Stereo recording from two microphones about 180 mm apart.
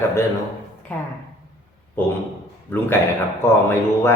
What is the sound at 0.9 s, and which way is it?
Speech, 10° left (ahead or behind).